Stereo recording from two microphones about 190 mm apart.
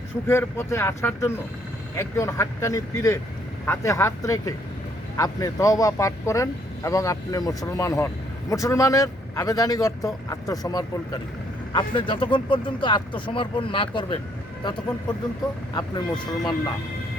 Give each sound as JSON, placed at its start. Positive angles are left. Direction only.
{"t": 0.3, "sound": "a man's voice", "side_deg": 15}
{"t": 15.7, "sound": "speech", "side_deg": 25}